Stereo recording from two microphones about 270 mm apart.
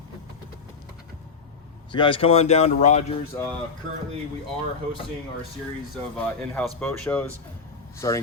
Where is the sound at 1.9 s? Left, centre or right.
Centre.